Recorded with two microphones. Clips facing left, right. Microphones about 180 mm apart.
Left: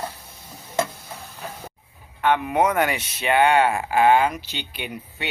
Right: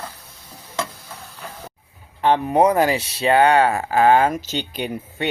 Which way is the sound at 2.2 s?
35° right (ahead or behind).